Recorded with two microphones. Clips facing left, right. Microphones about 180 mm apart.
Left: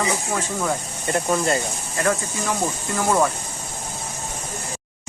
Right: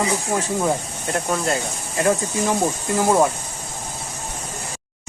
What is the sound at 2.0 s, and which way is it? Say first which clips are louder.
Speech: right 4 dB; 20° right (ahead or behind).